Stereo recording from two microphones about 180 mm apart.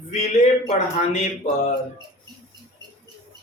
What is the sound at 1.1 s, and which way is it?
Mantra, 40° left (ahead or behind).